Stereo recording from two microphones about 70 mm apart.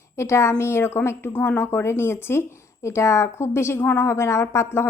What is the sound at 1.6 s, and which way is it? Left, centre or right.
A woman's voice, left.